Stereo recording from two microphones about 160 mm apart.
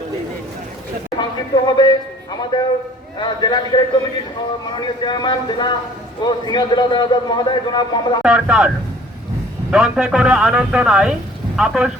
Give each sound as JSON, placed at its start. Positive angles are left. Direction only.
{"t": 1.2, "sound": "a man's voice", "side_deg": 30}
{"t": 4.6, "sound": "a man's voice", "side_deg": 30}
{"t": 8.2, "sound": "speech", "side_deg": -5}
{"t": 9.7, "sound": "speech", "side_deg": -5}